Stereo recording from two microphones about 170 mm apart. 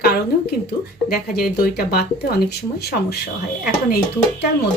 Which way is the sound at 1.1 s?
60° left (ahead or behind).